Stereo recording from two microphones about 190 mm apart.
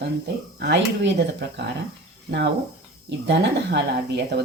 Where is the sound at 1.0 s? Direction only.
65° right (ahead or behind).